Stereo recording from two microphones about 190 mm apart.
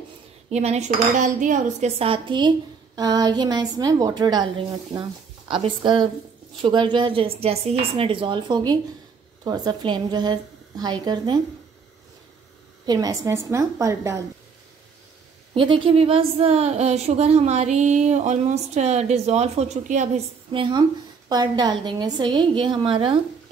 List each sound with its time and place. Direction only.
0.5 s a woman's voice: 35° right (ahead or behind)
12.8 s a woman's voice: 20° right (ahead or behind)
15.5 s speech: 25° right (ahead or behind)
21.3 s a woman's voice: 20° right (ahead or behind)